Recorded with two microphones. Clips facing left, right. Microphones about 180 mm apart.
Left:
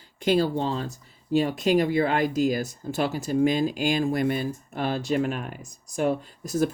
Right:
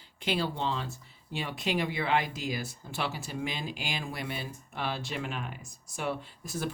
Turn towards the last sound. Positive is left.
turn(degrees=40)  # may be behind; listen again after turning